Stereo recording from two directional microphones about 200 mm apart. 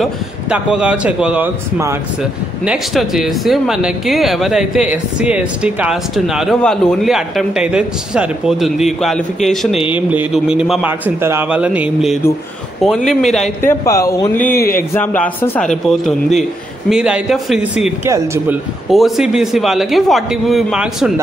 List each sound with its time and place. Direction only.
0.0 s a man's voice: 5° right (ahead or behind)
13.6 s speech: 15° left (ahead or behind)
14.6 s a man's voice: 45° left (ahead or behind)
15.0 s a man's voice: 10° left (ahead or behind); by 18.6 s 15° right (ahead or behind)
18.9 s speech: centre (ahead or behind)